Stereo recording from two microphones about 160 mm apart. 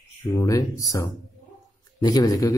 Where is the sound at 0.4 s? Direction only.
20° left (ahead or behind).